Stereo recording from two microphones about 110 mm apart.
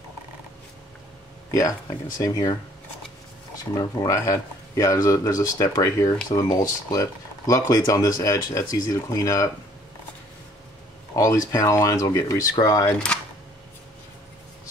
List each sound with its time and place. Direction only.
1.5 s speech: 30° left (ahead or behind)
4.1 s speech: 30° left (ahead or behind)
11.1 s speech: 30° left (ahead or behind)